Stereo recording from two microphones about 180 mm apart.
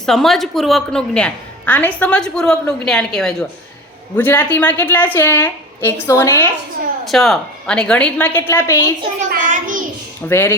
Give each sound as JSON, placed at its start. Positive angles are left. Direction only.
{"t": 0.0, "sound": "a woman's voice", "side_deg": 0}
{"t": 7.0, "sound": "a woman's voice", "side_deg": 0}
{"t": 9.3, "sound": "a child's voice", "side_deg": -45}
{"t": 10.2, "sound": "a woman's voice", "side_deg": 15}